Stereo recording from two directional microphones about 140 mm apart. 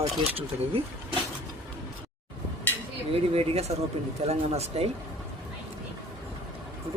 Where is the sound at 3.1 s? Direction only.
45° right (ahead or behind).